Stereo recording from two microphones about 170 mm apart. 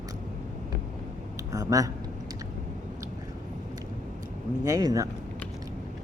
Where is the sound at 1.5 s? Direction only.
20° right (ahead or behind).